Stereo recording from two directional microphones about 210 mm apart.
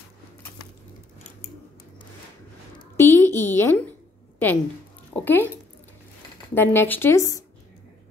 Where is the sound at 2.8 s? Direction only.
10° left (ahead or behind).